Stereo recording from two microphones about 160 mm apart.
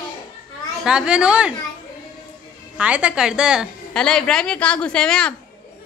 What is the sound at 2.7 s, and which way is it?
Speech, 10° right (ahead or behind).